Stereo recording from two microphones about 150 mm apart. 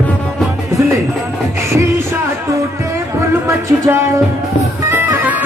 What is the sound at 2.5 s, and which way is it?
Music, 20° right (ahead or behind).